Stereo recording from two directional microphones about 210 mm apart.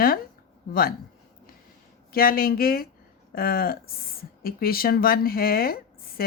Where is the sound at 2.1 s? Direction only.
45° left (ahead or behind).